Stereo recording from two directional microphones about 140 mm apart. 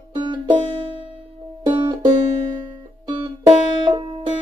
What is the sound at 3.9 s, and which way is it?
Music, 35° right (ahead or behind).